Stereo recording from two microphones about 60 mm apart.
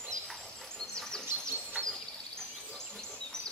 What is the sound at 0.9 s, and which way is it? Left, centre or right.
Insect, centre.